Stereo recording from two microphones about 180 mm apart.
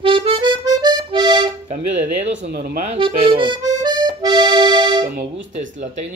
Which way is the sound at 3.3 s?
25° right (ahead or behind).